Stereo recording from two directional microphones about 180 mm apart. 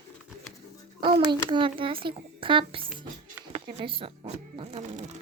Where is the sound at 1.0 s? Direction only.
25° right (ahead or behind).